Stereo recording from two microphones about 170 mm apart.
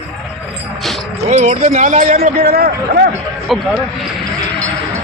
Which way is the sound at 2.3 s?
65° right (ahead or behind).